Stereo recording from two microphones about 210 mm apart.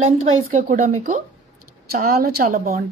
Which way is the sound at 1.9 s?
45° right (ahead or behind).